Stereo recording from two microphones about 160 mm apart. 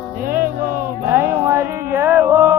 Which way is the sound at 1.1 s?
15° right (ahead or behind).